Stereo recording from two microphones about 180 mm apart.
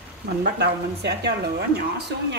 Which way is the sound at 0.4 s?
65° right (ahead or behind).